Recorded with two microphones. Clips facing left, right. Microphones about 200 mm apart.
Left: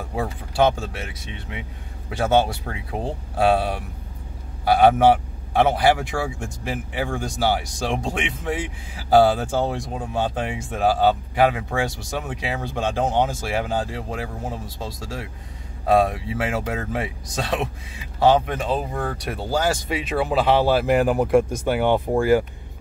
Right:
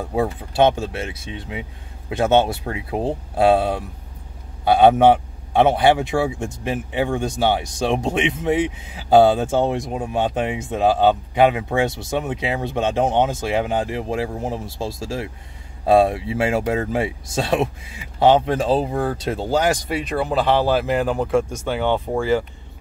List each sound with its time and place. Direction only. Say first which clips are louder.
0.1 s a man's voice: right 6 dB; 20° right (ahead or behind)
20.1 s speech: even; 5° left (ahead or behind)